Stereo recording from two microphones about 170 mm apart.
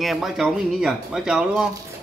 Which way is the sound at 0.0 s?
Centre (ahead or behind).